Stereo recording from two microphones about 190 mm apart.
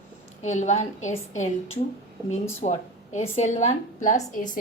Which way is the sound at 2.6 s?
35° left (ahead or behind).